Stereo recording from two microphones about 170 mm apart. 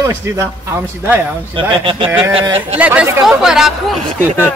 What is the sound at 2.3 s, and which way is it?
Speech, 35° right (ahead or behind).